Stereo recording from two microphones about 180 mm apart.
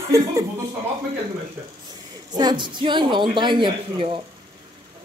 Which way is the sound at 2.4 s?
25° right (ahead or behind).